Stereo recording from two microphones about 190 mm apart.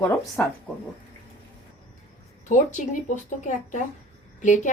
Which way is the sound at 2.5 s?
40° left (ahead or behind).